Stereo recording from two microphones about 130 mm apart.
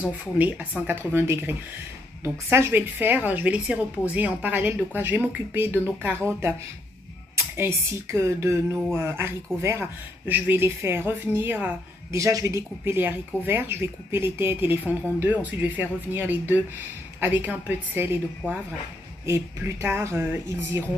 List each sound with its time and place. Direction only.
0.0 s a woman's voice: 10° right (ahead or behind)
19.2 s speech: 20° right (ahead or behind)